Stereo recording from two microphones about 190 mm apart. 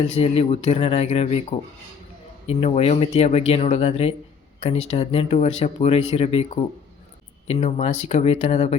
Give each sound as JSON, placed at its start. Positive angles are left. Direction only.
{"t": 0.2, "sound": "speech", "side_deg": 35}